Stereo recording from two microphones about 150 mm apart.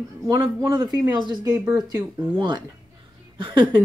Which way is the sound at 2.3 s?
30° right (ahead or behind).